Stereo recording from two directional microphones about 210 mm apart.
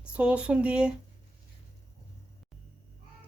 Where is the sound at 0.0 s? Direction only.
5° right (ahead or behind).